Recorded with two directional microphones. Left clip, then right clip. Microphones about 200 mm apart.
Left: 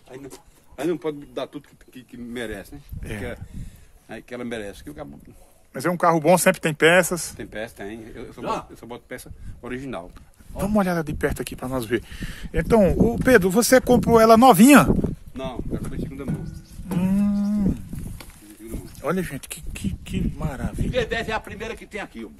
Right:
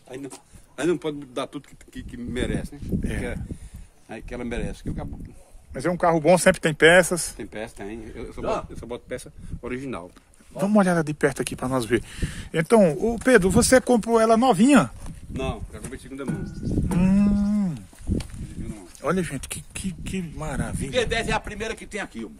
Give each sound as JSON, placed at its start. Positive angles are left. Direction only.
{"t": 0.1, "sound": "speech", "side_deg": -35}
{"t": 0.7, "sound": "a man's voice", "side_deg": -55}
{"t": 2.3, "sound": "speech", "side_deg": -20}
{"t": 3.0, "sound": "speech", "side_deg": 0}
{"t": 14.4, "sound": "speech", "side_deg": 30}
{"t": 15.3, "sound": "speech", "side_deg": -45}
{"t": 16.9, "sound": "livestock", "side_deg": -10}
{"t": 18.9, "sound": "speech", "side_deg": -5}
{"t": 20.9, "sound": "speech", "side_deg": -45}